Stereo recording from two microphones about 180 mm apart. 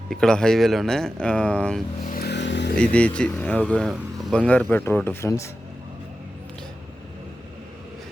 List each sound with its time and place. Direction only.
0.1 s speech: 5° left (ahead or behind)
2.0 s vehicle: 60° left (ahead or behind); by 2.7 s 75° left (ahead or behind)
2.7 s speech: 5° left (ahead or behind)